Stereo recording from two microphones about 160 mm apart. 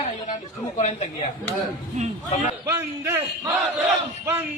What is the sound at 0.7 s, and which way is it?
Speech, 45° left (ahead or behind).